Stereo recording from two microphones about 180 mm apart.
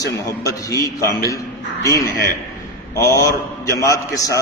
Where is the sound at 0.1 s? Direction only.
20° left (ahead or behind).